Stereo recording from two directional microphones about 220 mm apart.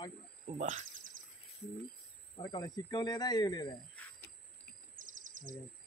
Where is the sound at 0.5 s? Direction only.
35° right (ahead or behind).